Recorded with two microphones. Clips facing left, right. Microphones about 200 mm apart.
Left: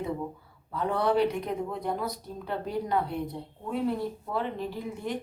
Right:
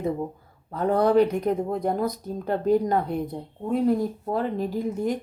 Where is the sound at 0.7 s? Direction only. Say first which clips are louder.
Right 6 dB; 45° right (ahead or behind).